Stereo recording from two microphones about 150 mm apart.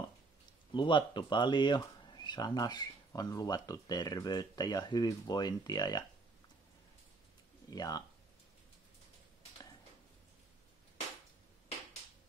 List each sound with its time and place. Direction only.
0.7 s speech: 30° left (ahead or behind)
7.7 s speech: 25° left (ahead or behind)